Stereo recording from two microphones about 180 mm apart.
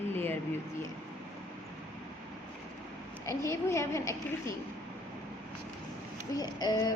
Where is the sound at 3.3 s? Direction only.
15° left (ahead or behind).